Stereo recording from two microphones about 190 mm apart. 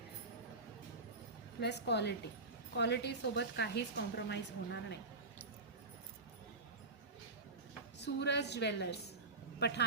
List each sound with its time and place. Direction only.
1.6 s a woman's voice: 60° left (ahead or behind)
7.9 s a woman's voice: 65° left (ahead or behind)